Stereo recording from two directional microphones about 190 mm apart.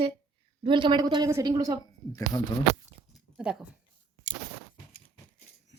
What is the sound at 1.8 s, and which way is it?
Speech, 20° left (ahead or behind).